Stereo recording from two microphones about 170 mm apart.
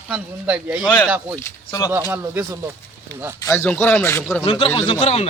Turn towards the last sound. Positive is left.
turn(degrees=35)  # may be behind; listen again after turning